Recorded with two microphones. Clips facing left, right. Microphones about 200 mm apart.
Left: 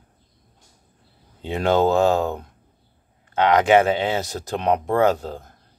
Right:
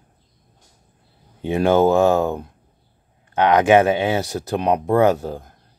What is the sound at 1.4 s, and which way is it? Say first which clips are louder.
Speech: right 3 dB; 15° right (ahead or behind).